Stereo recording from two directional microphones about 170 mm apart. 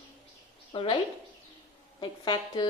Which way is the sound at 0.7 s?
30° left (ahead or behind).